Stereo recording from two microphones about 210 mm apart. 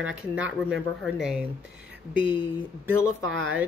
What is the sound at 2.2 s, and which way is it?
Speech, 25° left (ahead or behind).